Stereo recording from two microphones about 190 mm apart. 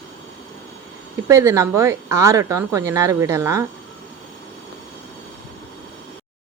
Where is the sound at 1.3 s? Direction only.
15° right (ahead or behind).